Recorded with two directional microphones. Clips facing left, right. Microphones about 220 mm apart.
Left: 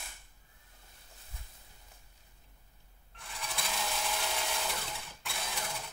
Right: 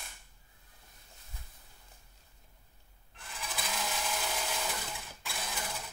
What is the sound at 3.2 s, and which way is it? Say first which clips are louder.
Sewing machine: even; centre (ahead or behind).